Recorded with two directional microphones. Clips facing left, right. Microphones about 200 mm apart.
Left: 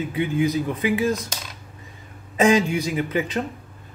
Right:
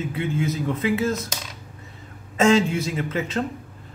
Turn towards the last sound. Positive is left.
turn(degrees=15)  # may be behind; listen again after turning